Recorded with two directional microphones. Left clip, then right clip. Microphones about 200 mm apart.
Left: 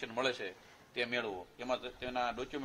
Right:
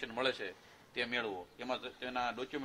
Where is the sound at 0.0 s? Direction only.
15° left (ahead or behind).